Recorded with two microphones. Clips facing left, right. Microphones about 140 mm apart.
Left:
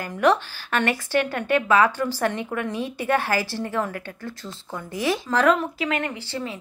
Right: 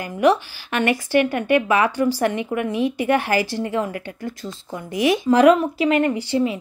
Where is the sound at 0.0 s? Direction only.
10° right (ahead or behind).